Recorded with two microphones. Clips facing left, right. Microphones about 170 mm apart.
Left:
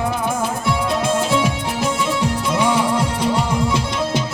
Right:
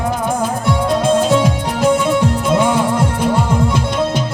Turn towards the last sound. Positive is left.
turn(degrees=-55)  # may be behind; listen again after turning